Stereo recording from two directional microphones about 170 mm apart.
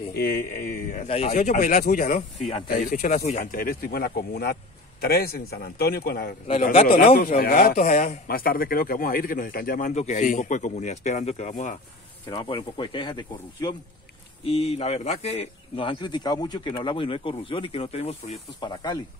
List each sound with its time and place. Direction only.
0.1 s a man's voice: 60° left (ahead or behind); by 3.4 s 45° left (ahead or behind)
3.5 s a man's voice: 60° left (ahead or behind)
6.7 s a man's voice: 50° left (ahead or behind)
12.3 s speech: 30° left (ahead or behind)